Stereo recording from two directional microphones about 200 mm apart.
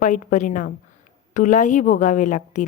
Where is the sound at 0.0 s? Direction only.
40° left (ahead or behind).